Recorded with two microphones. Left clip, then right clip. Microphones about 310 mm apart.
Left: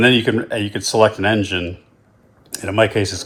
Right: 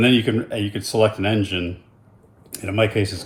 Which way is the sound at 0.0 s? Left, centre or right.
Centre.